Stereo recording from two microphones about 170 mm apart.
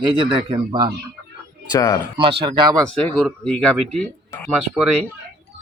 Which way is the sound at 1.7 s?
20° left (ahead or behind).